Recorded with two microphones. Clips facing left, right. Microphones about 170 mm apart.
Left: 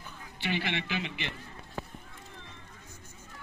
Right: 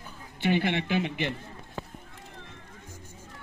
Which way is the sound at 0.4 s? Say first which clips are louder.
Right 7 dB; 50° right (ahead or behind).